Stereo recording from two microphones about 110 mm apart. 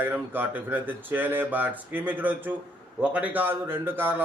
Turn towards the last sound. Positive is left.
turn(degrees=-20)  # may be behind; listen again after turning